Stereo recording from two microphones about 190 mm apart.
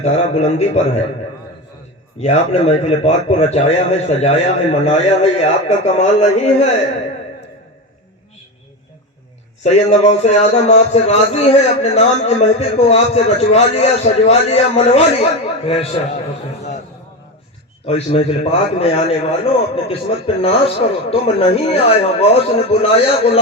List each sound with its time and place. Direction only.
0.0 s a man's voice: 35° left (ahead or behind)
2.1 s a man's voice: 35° left (ahead or behind)
9.6 s a man's voice: 35° left (ahead or behind)
17.8 s a man's voice: 30° left (ahead or behind)